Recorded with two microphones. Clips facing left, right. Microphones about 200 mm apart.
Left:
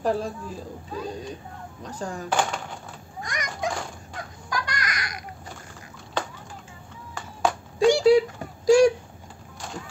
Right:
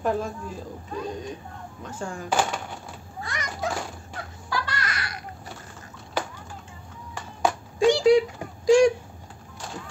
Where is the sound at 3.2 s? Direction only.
15° left (ahead or behind).